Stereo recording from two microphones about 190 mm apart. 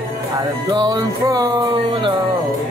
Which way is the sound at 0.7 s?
20° right (ahead or behind).